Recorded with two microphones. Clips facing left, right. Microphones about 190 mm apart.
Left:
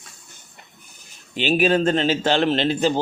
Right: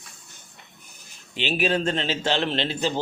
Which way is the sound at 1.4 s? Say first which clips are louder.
Left 6 dB; 45° left (ahead or behind).